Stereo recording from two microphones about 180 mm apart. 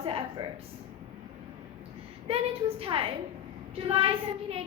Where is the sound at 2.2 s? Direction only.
30° right (ahead or behind).